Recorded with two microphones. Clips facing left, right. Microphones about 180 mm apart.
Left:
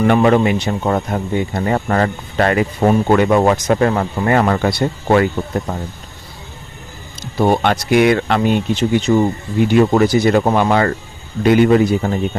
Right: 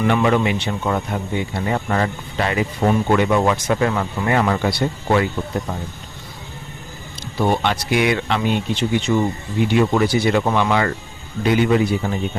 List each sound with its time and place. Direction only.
0.0 s speech: 45° left (ahead or behind)
7.3 s speech: 45° left (ahead or behind)